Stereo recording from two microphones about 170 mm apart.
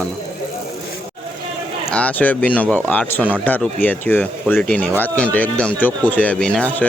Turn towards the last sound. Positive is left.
turn(degrees=5)  # may be behind; listen again after turning